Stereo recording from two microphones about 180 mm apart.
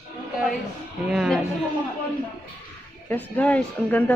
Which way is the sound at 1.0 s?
5° right (ahead or behind).